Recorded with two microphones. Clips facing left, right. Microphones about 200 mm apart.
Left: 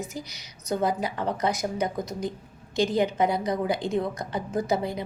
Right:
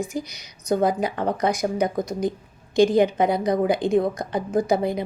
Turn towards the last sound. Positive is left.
turn(degrees=-15)  # may be behind; listen again after turning